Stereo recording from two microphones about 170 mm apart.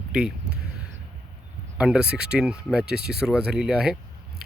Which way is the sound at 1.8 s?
5° right (ahead or behind).